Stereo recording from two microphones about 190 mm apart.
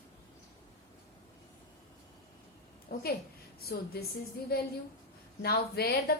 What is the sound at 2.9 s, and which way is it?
A woman's voice, 50° left (ahead or behind).